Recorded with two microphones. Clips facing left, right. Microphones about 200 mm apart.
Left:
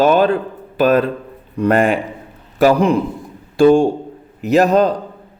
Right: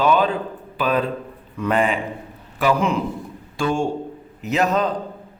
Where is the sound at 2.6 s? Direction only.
35° left (ahead or behind).